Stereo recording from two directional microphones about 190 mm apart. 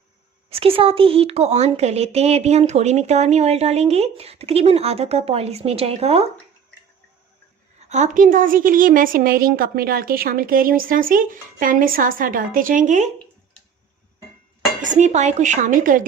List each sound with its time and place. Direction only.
0.5 s speech: 30° right (ahead or behind)
7.9 s a woman's voice: 40° right (ahead or behind)
14.8 s speech: 40° right (ahead or behind)